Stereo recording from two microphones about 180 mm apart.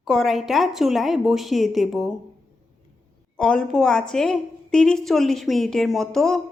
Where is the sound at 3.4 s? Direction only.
5° left (ahead or behind).